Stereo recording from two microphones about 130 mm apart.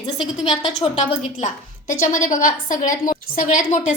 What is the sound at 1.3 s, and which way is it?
Speech, 65° left (ahead or behind).